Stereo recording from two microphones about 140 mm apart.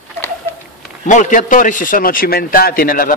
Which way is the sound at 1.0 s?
60° left (ahead or behind).